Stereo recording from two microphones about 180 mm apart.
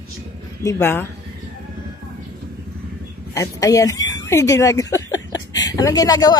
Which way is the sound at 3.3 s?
20° left (ahead or behind).